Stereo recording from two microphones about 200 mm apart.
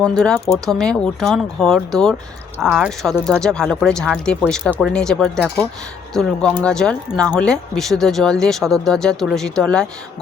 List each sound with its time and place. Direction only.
0.0 s speech: 5° left (ahead or behind)